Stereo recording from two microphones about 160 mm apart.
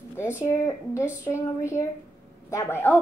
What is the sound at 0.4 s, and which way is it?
Speech, 15° left (ahead or behind).